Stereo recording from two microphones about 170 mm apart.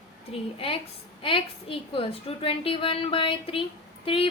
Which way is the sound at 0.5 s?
35° left (ahead or behind).